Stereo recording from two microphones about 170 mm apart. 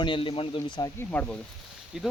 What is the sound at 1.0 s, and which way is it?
Speech, 10° left (ahead or behind).